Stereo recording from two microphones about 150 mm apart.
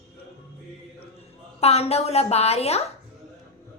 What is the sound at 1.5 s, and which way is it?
A woman's voice, 40° left (ahead or behind).